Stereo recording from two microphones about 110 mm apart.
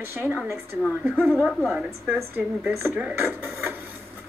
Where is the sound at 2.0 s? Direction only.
15° right (ahead or behind).